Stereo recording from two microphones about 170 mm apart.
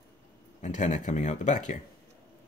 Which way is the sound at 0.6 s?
45° left (ahead or behind).